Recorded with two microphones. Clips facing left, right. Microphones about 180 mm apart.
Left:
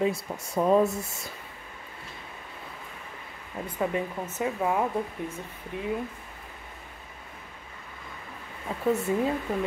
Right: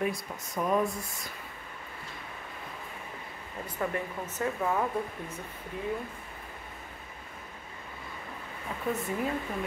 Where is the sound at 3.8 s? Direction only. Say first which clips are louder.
Left 4 dB; 20° left (ahead or behind).